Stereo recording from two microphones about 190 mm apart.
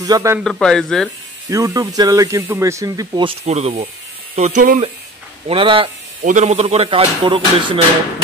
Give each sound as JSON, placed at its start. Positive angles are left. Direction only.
{"t": 0.0, "sound": "speech", "side_deg": -15}
{"t": 0.4, "sound": "a man's voice", "side_deg": 5}
{"t": 1.5, "sound": "speech", "side_deg": -20}
{"t": 3.4, "sound": "speech", "side_deg": -35}
{"t": 5.5, "sound": "speech", "side_deg": -25}
{"t": 6.2, "sound": "speech", "side_deg": -40}